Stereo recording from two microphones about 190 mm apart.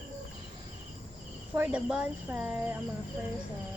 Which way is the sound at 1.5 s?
5° right (ahead or behind).